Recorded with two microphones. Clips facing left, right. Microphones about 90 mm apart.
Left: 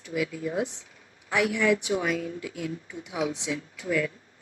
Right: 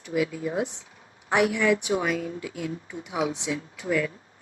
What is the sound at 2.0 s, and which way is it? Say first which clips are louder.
A woman's voice: right 1 dB; 30° right (ahead or behind).